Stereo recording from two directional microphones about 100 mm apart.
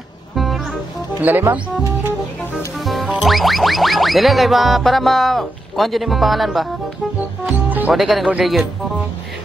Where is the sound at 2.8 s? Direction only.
Centre (ahead or behind).